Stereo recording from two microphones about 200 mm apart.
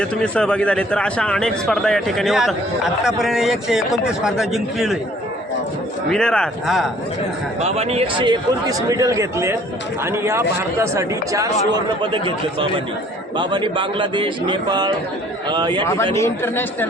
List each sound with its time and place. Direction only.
0.0 s speech: 5° left (ahead or behind)
6.1 s speech: 5° left (ahead or behind)
7.6 s a man's voice: 30° right (ahead or behind); by 11.5 s 15° right (ahead or behind)
13.3 s a man's voice: 25° right (ahead or behind)
16.1 s speech: 10° left (ahead or behind)